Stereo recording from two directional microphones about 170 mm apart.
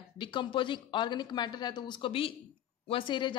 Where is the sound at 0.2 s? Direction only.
30° left (ahead or behind).